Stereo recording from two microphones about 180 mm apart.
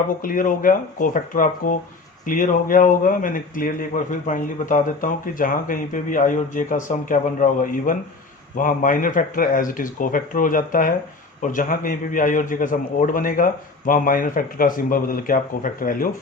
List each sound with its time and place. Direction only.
0.2 s speech: 50° left (ahead or behind)